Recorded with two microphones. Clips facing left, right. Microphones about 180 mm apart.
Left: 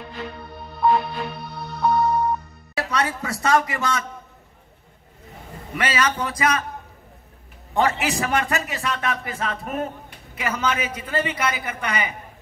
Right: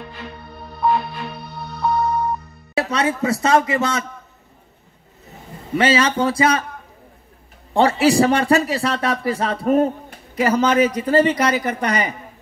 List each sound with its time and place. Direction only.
0.8 s music: centre (ahead or behind)
2.7 s speech: 25° right (ahead or behind)
5.8 s speech: 30° right (ahead or behind)
7.7 s a man's voice: 30° right (ahead or behind)